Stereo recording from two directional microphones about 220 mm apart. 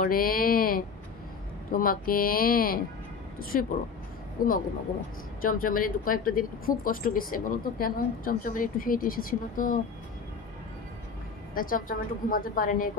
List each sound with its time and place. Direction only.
0.0 s a sound: 40° left (ahead or behind)
1.7 s speech: 40° left (ahead or behind)
11.5 s speech: 40° left (ahead or behind)